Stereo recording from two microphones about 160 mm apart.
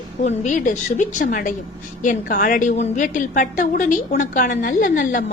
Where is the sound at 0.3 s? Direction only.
50° left (ahead or behind).